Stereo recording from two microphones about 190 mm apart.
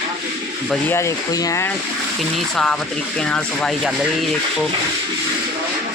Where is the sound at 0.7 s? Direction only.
10° left (ahead or behind).